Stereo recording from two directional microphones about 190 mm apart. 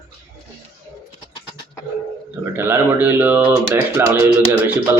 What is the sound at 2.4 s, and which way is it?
A man's voice, 10° right (ahead or behind).